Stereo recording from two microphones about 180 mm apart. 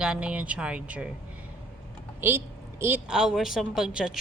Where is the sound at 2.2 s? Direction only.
10° right (ahead or behind).